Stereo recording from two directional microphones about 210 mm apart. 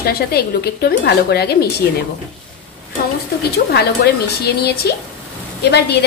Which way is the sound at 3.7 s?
50° left (ahead or behind).